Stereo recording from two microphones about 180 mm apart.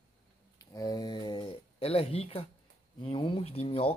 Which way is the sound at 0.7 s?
20° left (ahead or behind).